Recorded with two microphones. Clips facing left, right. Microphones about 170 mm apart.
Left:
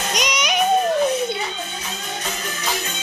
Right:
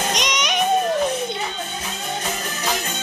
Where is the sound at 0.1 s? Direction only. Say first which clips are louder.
Left 1 dB; 5° left (ahead or behind).